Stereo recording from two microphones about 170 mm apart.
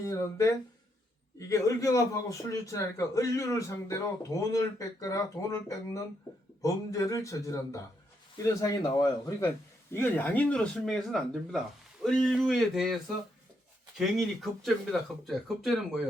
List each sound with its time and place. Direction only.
0.0 s a man's voice: 15° left (ahead or behind); by 13.0 s centre (ahead or behind)
14.0 s speech: centre (ahead or behind)